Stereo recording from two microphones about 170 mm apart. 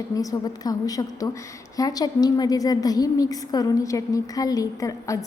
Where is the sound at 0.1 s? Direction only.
20° left (ahead or behind).